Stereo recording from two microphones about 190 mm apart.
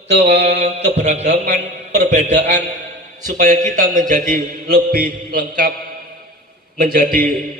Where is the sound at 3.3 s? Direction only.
40° right (ahead or behind).